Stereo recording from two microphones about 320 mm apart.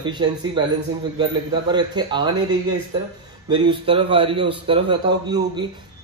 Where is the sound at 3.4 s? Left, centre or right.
Centre.